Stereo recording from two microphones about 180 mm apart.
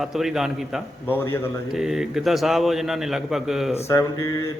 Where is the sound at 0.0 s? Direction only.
Centre (ahead or behind).